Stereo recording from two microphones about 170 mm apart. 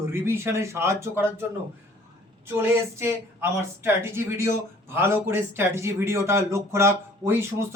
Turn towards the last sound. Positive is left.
turn(degrees=-15)  # may be behind; listen again after turning